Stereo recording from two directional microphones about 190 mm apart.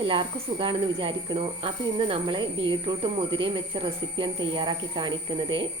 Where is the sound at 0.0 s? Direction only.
30° right (ahead or behind).